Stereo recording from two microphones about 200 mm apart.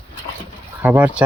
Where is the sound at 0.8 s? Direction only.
10° right (ahead or behind).